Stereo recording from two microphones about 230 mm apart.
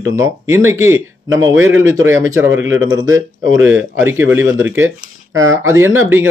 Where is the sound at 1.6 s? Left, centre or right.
Right.